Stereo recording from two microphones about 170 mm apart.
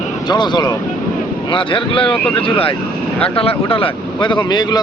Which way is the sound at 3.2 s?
35° left (ahead or behind).